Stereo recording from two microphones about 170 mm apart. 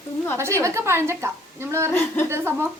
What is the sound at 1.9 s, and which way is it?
Speech, 10° left (ahead or behind).